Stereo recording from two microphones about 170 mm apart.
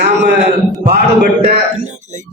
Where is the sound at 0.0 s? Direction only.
90° right.